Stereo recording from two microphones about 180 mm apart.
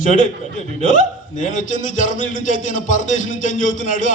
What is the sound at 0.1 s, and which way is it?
A man's voice, 45° left (ahead or behind).